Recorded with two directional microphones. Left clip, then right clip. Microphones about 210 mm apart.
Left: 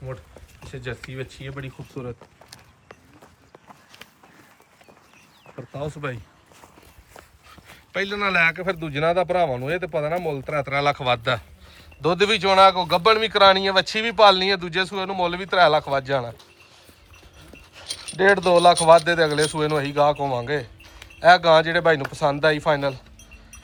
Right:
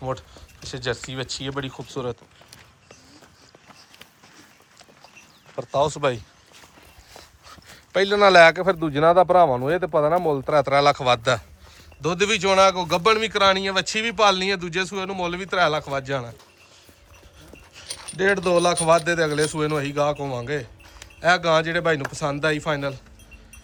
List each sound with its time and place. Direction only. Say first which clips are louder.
0.7 s a man's voice: right 6 dB; 10° right (ahead or behind)
5.7 s a man's voice: right 10 dB; 10° right (ahead or behind)
7.7 s a man's voice: right 6 dB; 5° right (ahead or behind)
17.8 s keys jangling: left 3 dB; 30° right (ahead or behind)
18.2 s a man's voice: left 4 dB; 10° right (ahead or behind)